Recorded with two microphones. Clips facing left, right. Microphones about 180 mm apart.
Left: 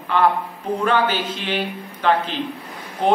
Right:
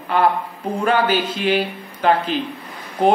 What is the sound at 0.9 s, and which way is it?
A man's voice, 10° right (ahead or behind).